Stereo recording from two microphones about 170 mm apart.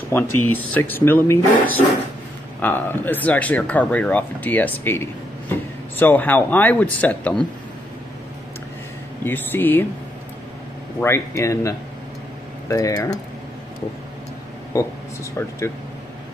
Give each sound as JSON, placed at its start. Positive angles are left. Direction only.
{"t": 0.1, "sound": "speech", "side_deg": 10}
{"t": 9.2, "sound": "speech", "side_deg": 10}
{"t": 11.0, "sound": "speech", "side_deg": 15}
{"t": 14.7, "sound": "speech", "side_deg": 20}